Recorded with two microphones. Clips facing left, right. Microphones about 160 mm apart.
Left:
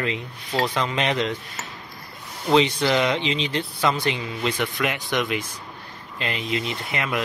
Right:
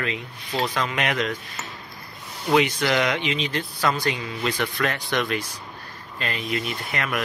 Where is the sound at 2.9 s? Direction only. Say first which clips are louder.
Left 2 dB; 20° left (ahead or behind).